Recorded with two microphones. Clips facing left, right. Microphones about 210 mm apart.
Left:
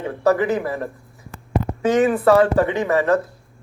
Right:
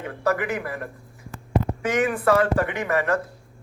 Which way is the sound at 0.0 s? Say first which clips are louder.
Left 6 dB; 25° left (ahead or behind).